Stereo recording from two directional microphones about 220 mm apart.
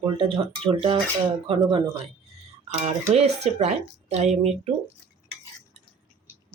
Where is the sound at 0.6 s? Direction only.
25° right (ahead or behind).